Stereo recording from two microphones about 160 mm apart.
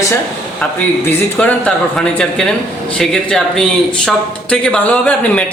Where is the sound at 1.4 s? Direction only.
10° left (ahead or behind).